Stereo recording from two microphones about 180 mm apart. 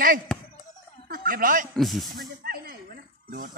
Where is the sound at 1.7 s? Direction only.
Centre (ahead or behind).